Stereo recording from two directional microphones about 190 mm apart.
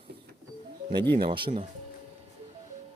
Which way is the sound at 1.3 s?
25° right (ahead or behind).